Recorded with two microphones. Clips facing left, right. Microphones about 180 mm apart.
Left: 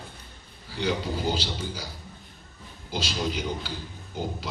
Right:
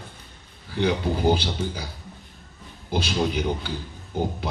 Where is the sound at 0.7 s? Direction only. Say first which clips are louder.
Right 5 dB; 55° right (ahead or behind).